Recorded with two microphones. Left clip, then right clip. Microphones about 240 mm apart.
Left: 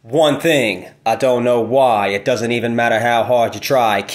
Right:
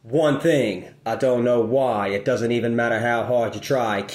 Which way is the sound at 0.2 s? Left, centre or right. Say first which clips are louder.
Left 6 dB; centre.